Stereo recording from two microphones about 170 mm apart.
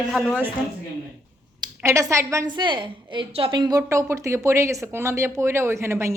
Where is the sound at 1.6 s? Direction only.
20° right (ahead or behind).